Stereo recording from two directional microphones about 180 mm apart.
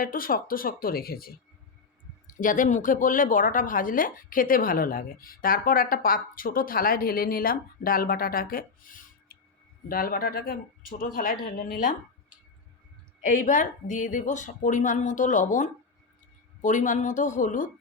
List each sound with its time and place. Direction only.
0.0 s a woman's voice: 50° left (ahead or behind)
13.2 s a woman's voice: 45° left (ahead or behind)